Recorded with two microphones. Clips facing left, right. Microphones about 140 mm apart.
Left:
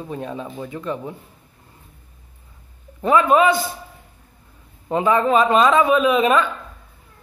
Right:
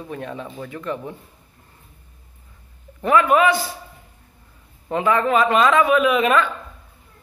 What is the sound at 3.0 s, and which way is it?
Speech, 20° left (ahead or behind).